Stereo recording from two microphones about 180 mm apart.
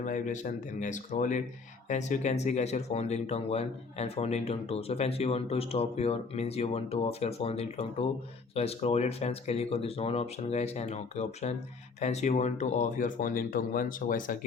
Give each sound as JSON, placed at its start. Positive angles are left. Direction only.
{"t": 0.0, "sound": "speech", "side_deg": 45}